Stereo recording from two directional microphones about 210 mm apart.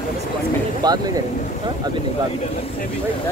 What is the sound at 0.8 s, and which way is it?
Speech, 20° right (ahead or behind).